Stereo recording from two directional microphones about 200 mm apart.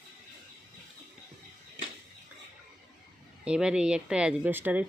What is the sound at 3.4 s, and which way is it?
Speech, 5° right (ahead or behind).